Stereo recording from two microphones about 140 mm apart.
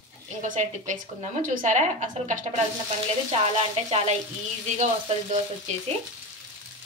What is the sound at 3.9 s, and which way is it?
Speech, 45° right (ahead or behind).